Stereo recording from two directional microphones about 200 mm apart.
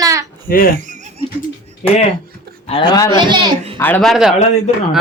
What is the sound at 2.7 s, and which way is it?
Speech, 25° left (ahead or behind).